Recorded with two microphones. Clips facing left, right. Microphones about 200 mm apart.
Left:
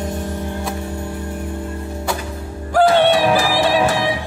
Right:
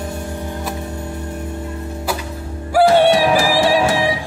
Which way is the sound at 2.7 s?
10° right (ahead or behind).